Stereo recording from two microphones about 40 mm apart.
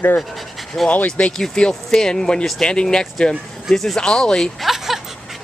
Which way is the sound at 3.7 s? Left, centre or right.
Centre.